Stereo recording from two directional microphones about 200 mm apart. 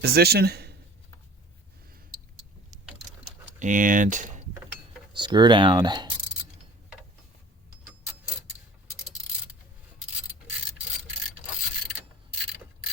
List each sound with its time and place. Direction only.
0.0 s a man's voice: 50° right (ahead or behind)
3.6 s speech: 40° right (ahead or behind)
5.1 s speech: 20° right (ahead or behind)